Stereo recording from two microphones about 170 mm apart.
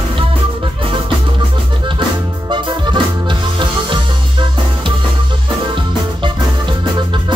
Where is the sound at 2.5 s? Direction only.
30° right (ahead or behind).